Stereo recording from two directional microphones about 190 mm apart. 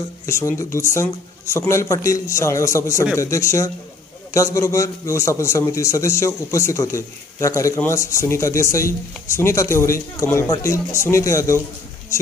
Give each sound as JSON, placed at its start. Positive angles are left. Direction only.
{"t": 0.3, "sound": "a man's voice", "side_deg": 15}